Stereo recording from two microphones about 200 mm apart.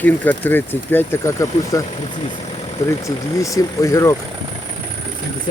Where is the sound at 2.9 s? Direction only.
15° left (ahead or behind).